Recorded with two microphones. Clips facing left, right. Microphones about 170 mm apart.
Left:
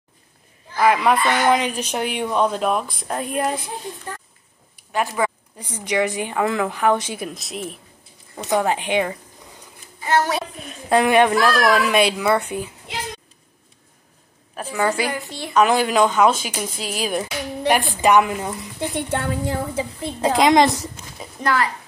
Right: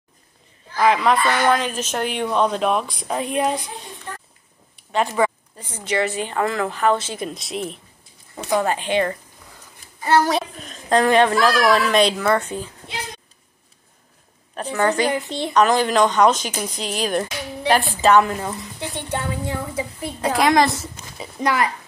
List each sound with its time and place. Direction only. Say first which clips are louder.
0.7 s speech: even; 5° left (ahead or behind)
5.2 s a sound: right 3 dB; 5° left (ahead or behind)
5.6 s speech: left 1 dB; 15° left (ahead or behind)
8.4 s speech: left 1 dB; 15° left (ahead or behind)
10.7 s a man's voice: even; 10° left (ahead or behind)
11.4 s a child's voice: even; centre (ahead or behind)
14.5 s a woman's voice: right 2 dB; 5° left (ahead or behind)
15.0 s a woman's voice: right 5 dB; 20° right (ahead or behind)
15.5 s speech: even; 10° left (ahead or behind)
19.4 s a woman's voice: left 2 dB; 35° left (ahead or behind); by 20.9 s 20° left (ahead or behind)
21.2 s a woman's voice: right 1 dB; 10° right (ahead or behind)